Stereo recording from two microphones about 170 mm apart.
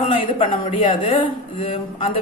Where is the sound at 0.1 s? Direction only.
30° left (ahead or behind).